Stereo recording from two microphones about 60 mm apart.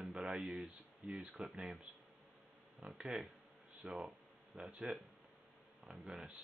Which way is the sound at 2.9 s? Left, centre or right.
Centre.